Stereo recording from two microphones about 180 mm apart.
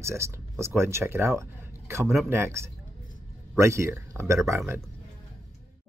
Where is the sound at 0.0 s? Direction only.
15° right (ahead or behind).